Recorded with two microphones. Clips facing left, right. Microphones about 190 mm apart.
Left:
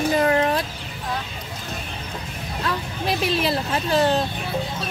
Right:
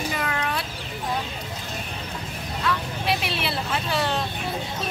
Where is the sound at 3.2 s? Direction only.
40° left (ahead or behind).